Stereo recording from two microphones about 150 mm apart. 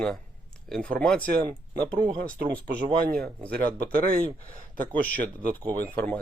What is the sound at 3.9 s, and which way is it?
Speech, 75° right (ahead or behind).